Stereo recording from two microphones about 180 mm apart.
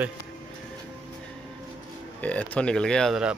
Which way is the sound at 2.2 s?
10° left (ahead or behind).